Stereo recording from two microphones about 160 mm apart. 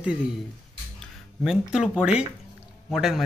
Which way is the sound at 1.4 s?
5° right (ahead or behind).